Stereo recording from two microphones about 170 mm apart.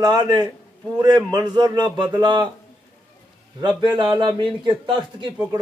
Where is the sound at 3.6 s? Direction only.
25° right (ahead or behind).